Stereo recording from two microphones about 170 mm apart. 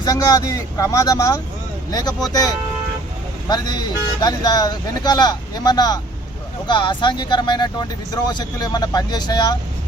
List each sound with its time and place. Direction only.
0.0 s speech: 20° left (ahead or behind)
3.5 s speech: 25° left (ahead or behind)